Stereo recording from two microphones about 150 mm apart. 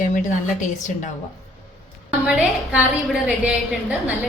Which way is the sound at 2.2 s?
5° right (ahead or behind).